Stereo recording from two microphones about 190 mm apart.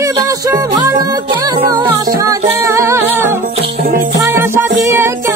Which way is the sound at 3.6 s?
50° right (ahead or behind).